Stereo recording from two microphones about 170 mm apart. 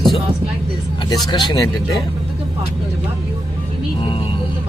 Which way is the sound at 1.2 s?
25° left (ahead or behind).